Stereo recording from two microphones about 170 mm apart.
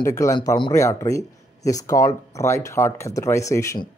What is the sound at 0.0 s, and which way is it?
Speech, 15° left (ahead or behind).